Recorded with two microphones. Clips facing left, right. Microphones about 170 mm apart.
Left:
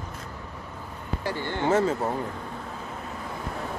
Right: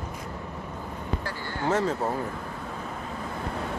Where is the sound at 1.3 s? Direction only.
25° left (ahead or behind).